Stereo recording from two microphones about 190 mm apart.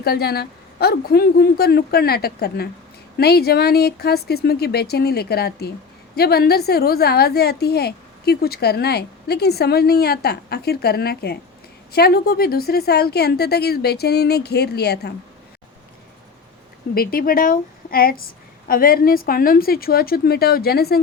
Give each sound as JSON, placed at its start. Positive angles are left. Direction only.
{"t": 0.0, "sound": "a woman's voice", "side_deg": 55}
{"t": 16.9, "sound": "a woman's voice", "side_deg": 50}